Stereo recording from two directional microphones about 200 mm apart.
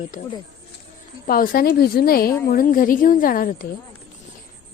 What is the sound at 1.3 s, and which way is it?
A woman's voice, 45° left (ahead or behind).